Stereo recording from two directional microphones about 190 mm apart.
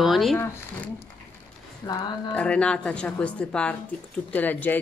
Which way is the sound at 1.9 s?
20° left (ahead or behind).